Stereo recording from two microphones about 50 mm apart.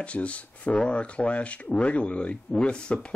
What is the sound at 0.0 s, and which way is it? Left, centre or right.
Speech, left.